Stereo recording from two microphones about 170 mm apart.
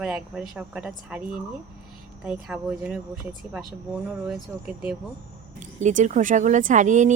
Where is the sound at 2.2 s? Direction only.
5° right (ahead or behind).